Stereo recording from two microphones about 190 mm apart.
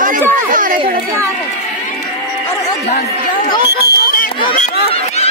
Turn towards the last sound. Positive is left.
turn(degrees=45)  # may be behind; listen again after turning